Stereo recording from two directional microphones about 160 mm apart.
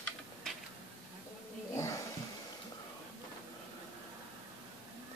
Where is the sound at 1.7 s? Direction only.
20° left (ahead or behind).